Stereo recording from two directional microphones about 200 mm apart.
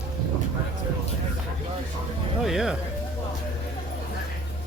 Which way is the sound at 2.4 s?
Centre (ahead or behind).